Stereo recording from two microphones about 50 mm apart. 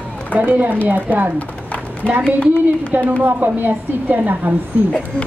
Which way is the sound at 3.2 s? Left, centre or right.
Right.